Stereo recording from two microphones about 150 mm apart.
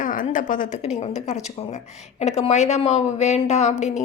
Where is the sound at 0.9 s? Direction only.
50° left (ahead or behind).